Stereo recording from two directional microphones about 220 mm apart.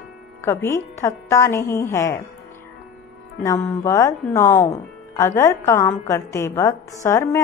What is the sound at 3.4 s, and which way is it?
A woman's voice, 15° left (ahead or behind).